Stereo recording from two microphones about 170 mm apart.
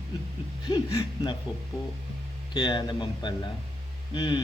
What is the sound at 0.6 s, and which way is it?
Speech, 25° left (ahead or behind).